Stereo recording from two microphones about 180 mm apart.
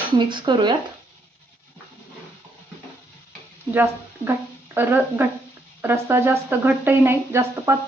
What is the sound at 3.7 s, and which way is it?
Speech, 10° right (ahead or behind).